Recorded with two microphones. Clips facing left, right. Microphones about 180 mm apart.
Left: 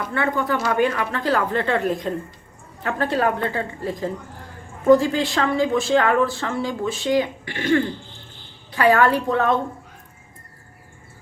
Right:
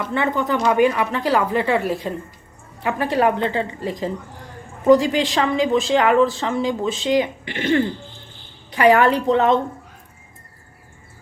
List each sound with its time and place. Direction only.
0.1 s a woman's voice: 20° right (ahead or behind)